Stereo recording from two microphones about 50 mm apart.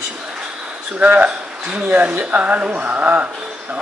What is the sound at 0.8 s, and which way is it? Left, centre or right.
Speech, right.